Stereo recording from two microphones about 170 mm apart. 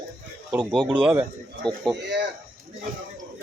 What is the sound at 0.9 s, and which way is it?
Speech, 10° right (ahead or behind).